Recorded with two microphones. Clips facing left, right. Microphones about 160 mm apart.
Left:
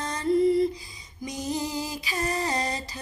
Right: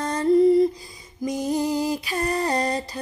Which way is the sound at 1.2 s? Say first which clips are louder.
Right 7 dB; 55° right (ahead or behind).